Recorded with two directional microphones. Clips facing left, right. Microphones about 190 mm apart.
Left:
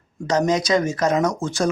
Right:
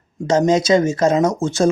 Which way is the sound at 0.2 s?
25° right (ahead or behind).